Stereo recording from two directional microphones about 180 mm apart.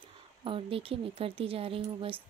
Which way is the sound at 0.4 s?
30° right (ahead or behind).